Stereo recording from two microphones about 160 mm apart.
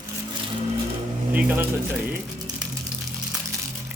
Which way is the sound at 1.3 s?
10° right (ahead or behind).